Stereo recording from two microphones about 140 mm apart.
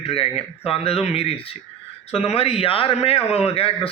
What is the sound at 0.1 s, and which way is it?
Speech, 45° left (ahead or behind).